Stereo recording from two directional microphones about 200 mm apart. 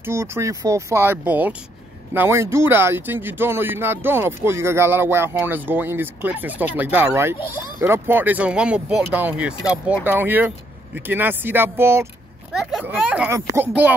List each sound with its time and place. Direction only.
0.0 s speech: 10° right (ahead or behind)